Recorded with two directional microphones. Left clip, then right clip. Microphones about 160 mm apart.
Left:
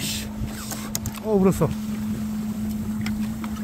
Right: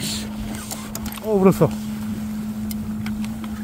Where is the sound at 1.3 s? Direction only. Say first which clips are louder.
Right 4 dB; 20° right (ahead or behind).